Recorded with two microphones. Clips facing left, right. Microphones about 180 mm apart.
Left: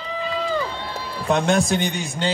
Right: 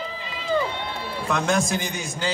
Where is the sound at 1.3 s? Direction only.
30° left (ahead or behind).